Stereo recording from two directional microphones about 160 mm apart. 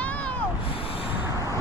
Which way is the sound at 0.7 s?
35° left (ahead or behind).